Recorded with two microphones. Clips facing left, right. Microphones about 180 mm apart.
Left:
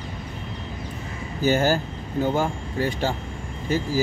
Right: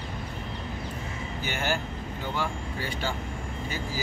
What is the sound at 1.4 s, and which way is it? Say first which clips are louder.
Speech: left 11 dB; 40° left (ahead or behind).